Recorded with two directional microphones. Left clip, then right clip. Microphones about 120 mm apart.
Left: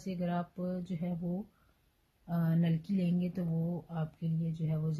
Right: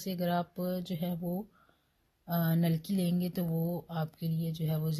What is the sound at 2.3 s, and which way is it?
Speech, 25° right (ahead or behind).